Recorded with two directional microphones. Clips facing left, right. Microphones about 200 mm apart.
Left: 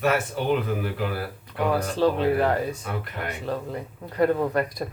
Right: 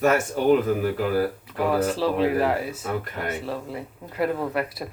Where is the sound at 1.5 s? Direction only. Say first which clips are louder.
Right 2 dB; 5° right (ahead or behind).